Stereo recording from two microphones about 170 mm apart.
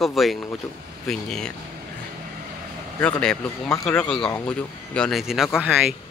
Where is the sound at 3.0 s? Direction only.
5° left (ahead or behind).